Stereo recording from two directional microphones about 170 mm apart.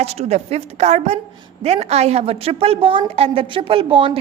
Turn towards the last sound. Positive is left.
turn(degrees=-30)  # may be behind; listen again after turning